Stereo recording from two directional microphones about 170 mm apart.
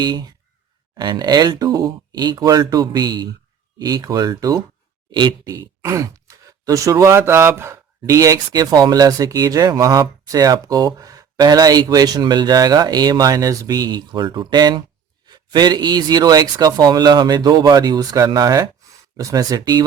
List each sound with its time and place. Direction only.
0.0 s speech: 25° right (ahead or behind)